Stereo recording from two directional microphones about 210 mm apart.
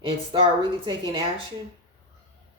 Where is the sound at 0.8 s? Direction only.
20° right (ahead or behind).